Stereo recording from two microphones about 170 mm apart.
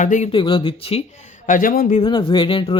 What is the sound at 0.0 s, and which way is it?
Speech, 45° left (ahead or behind).